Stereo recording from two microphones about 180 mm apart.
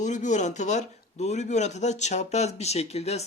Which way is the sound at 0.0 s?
45° left (ahead or behind).